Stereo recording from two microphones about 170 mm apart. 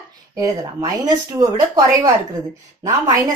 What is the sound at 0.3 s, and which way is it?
A woman's voice, 20° right (ahead or behind).